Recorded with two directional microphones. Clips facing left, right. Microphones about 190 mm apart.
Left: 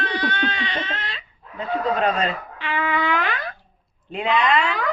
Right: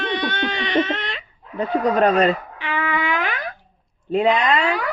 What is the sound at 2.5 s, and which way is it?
Music, 15° right (ahead or behind).